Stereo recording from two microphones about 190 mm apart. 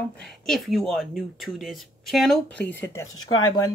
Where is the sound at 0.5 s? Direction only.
Centre (ahead or behind).